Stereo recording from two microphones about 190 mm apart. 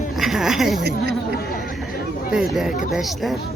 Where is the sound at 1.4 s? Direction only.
55° left (ahead or behind).